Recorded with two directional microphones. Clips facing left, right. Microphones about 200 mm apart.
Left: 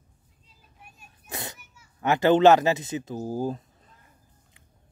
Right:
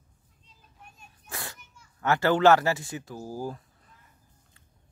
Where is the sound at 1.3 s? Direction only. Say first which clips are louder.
Left 3 dB; 20° left (ahead or behind).